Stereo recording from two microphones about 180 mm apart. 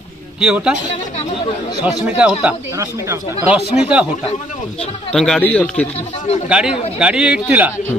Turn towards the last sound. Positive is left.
turn(degrees=-5)  # may be behind; listen again after turning